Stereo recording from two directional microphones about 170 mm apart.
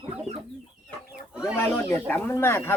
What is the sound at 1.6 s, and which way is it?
Speech, 15° left (ahead or behind).